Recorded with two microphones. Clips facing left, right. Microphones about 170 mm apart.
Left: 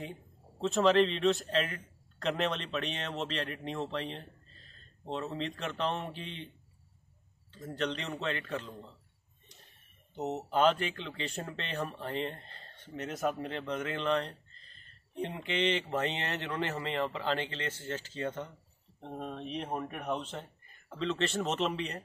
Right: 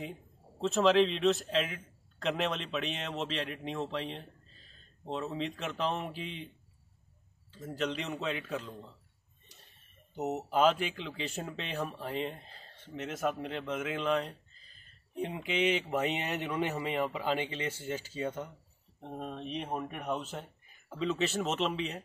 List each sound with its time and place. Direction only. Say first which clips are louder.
0.0 s speech: right 1 dB; centre (ahead or behind)
7.5 s speech: even; 5° right (ahead or behind)
10.1 s speech: right 1 dB; 5° right (ahead or behind)